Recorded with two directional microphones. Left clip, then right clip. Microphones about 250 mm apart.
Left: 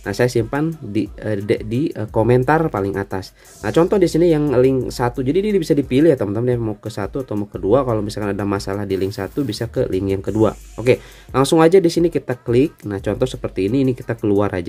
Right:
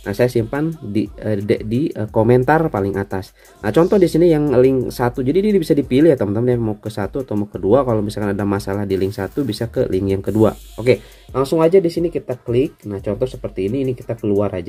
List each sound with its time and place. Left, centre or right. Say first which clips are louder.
0.0 s speech: right 1 dB; centre
11.3 s speech: left 1 dB; left